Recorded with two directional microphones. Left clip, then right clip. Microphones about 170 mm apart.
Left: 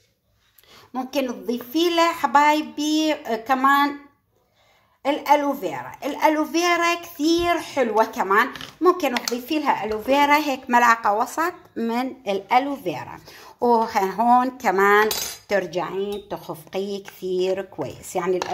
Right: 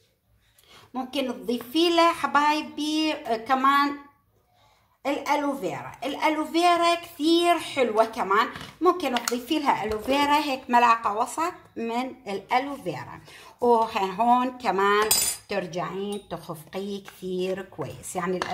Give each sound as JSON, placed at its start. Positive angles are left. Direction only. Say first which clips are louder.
{"t": 0.9, "sound": "speech", "louder": "left 4 dB", "side_deg": 40}
{"t": 5.0, "sound": "speech", "louder": "left 6 dB", "side_deg": 40}
{"t": 9.2, "sound": "speech", "louder": "left 2 dB", "side_deg": 20}